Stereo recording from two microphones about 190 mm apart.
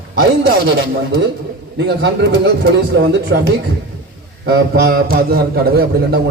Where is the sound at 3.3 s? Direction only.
80° right.